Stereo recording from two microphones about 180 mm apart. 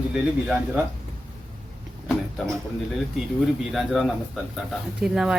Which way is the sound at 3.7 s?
Centre (ahead or behind).